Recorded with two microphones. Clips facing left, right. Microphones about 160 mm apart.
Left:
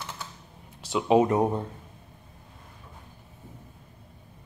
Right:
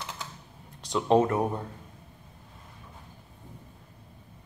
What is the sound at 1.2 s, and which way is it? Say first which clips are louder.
Speech: left 3 dB; 20° left (ahead or behind).